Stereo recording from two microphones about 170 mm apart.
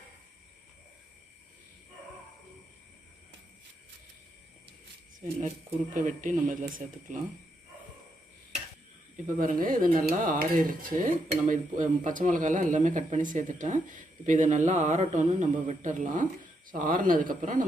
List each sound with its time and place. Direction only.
5.9 s speech: 50° right (ahead or behind)
9.4 s speech: 55° right (ahead or behind)